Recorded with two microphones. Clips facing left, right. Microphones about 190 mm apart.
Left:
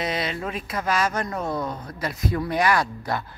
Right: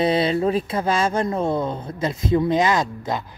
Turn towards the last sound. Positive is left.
turn(degrees=-20)  # may be behind; listen again after turning